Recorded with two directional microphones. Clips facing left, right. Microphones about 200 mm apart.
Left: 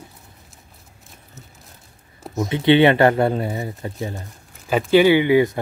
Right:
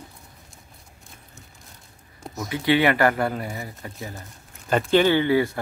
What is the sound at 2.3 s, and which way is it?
Speech, 25° left (ahead or behind).